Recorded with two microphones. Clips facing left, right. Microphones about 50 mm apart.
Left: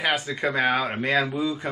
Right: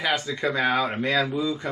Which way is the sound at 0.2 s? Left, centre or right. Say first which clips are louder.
Left 1 dB; left.